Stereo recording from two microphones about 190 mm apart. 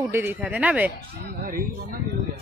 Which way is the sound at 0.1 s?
10° right (ahead or behind).